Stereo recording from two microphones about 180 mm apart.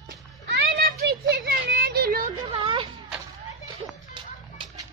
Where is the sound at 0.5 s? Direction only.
60° right (ahead or behind).